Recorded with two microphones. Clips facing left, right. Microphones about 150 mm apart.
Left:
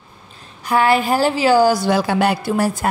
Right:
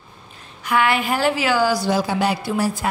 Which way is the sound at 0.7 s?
35° left (ahead or behind).